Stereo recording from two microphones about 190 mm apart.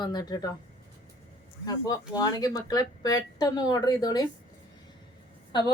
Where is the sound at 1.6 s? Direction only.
20° left (ahead or behind).